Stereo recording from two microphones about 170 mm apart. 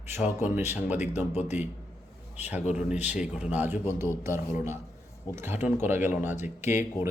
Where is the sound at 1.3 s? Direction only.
40° left (ahead or behind).